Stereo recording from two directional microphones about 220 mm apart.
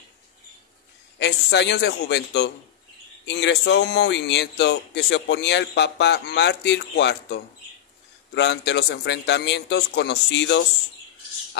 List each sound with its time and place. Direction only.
1.2 s speech: 50° left (ahead or behind)
8.4 s speech: 50° left (ahead or behind)